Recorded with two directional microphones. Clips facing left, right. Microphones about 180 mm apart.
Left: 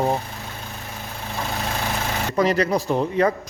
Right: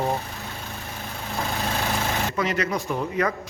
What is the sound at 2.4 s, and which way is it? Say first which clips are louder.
Speech: left 9 dB; 35° left (ahead or behind).